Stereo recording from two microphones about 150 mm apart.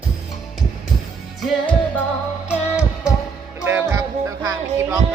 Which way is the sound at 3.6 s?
15° right (ahead or behind).